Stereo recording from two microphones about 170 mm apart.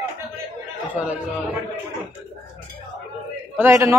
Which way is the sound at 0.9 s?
10° right (ahead or behind).